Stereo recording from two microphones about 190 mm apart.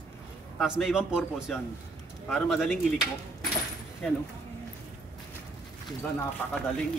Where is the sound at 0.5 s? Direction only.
5° right (ahead or behind).